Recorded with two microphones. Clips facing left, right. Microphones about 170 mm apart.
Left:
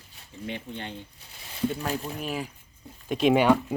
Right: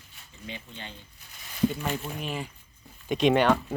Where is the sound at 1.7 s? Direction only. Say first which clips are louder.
Left 1 dB; 35° left (ahead or behind).